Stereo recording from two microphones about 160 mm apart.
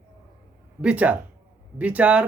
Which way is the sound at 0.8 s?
10° right (ahead or behind).